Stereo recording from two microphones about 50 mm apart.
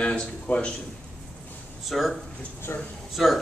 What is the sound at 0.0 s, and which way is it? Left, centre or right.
Speech, left.